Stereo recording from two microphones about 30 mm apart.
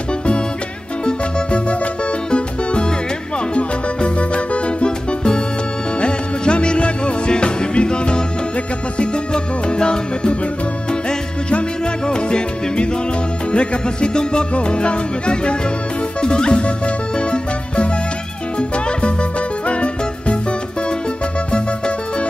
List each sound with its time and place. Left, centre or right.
1.0 s music: left
5.9 s music: left
11.8 s music: left
21.5 s music: left